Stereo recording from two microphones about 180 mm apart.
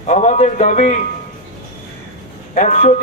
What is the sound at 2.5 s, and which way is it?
Speech, 45° left (ahead or behind).